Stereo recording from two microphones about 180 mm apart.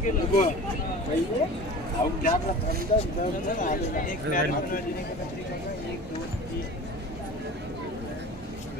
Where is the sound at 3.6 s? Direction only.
50° left (ahead or behind).